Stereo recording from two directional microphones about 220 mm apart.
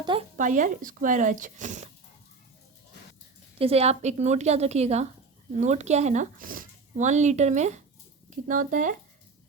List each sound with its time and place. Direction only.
0.0 s a woman's voice: 20° right (ahead or behind)
0.3 s speech: 35° right (ahead or behind)
3.6 s a woman's voice: 30° right (ahead or behind)